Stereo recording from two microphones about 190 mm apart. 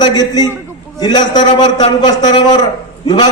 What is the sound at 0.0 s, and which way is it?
A man's voice, 20° left (ahead or behind).